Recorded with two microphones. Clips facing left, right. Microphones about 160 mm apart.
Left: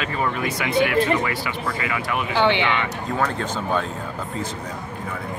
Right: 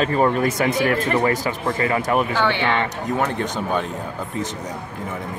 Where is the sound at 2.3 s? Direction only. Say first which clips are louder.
Left 1 dB; 20° left (ahead or behind).